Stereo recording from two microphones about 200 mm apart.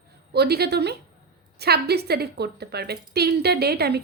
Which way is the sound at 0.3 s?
55° right (ahead or behind).